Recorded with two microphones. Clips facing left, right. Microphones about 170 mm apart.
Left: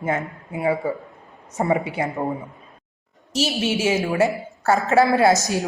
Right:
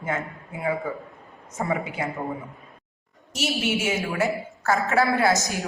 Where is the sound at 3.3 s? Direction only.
30° left (ahead or behind).